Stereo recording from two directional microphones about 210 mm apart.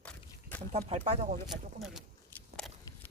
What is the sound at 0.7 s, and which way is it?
Speech, 35° right (ahead or behind).